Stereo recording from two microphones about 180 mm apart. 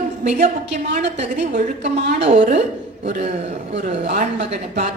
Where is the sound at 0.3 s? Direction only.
40° right (ahead or behind).